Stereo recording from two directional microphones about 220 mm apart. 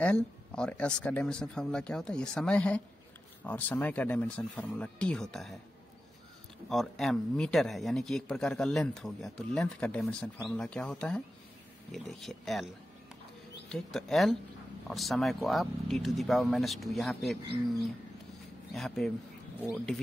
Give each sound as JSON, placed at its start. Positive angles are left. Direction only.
{"t": 0.0, "sound": "speech", "side_deg": 5}
{"t": 6.7, "sound": "speech", "side_deg": 0}
{"t": 13.7, "sound": "speech", "side_deg": 0}
{"t": 18.7, "sound": "speech", "side_deg": 0}